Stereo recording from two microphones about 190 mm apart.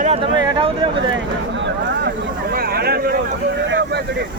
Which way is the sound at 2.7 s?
55° right (ahead or behind).